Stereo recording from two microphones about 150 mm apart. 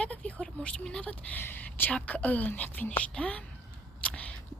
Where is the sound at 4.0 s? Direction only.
10° left (ahead or behind).